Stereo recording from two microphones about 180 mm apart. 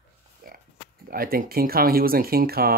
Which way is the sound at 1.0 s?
55° right (ahead or behind).